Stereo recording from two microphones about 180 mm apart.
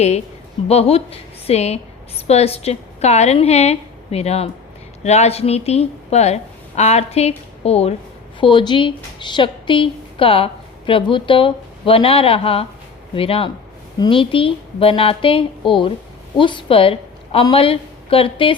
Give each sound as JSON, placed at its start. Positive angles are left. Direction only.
{"t": 0.7, "sound": "a woman's voice", "side_deg": 35}